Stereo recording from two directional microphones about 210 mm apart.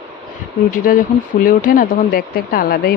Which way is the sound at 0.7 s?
40° left (ahead or behind).